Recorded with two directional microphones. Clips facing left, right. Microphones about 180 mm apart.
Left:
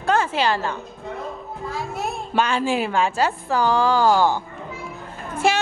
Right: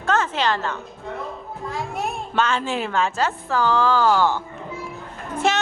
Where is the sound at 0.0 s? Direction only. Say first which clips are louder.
Left 1 dB; 10° left (ahead or behind).